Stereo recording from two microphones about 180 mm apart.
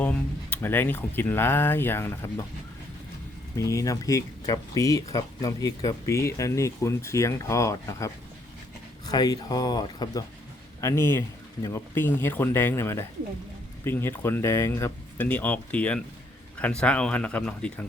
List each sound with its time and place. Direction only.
0.0 s speech: 10° left (ahead or behind)
3.6 s speech: 20° left (ahead or behind)